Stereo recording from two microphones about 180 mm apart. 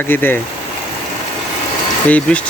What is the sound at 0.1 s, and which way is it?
Speech, 10° left (ahead or behind).